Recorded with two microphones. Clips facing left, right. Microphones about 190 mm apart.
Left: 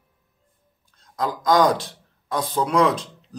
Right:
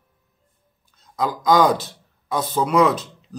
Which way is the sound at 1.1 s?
5° right (ahead or behind).